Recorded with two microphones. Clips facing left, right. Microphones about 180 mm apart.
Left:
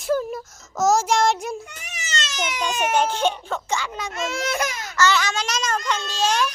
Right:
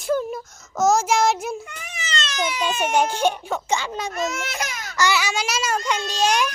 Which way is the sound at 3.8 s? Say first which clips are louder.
Right 2 dB; 30° right (ahead or behind).